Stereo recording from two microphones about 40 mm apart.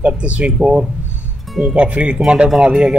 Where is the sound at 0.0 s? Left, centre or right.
Right.